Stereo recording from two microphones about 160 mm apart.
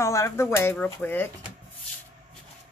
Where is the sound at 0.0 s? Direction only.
15° left (ahead or behind).